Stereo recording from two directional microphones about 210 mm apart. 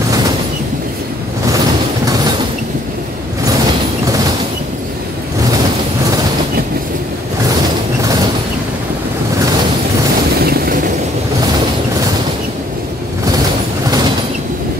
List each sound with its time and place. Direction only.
2.0 s a sound: 20° right (ahead or behind)
8.0 s mechanisms: 15° right (ahead or behind)
10.4 s vehicle: 45° right (ahead or behind)